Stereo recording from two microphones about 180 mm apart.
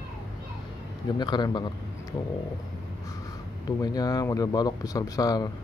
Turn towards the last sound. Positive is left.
turn(degrees=20)  # may be behind; listen again after turning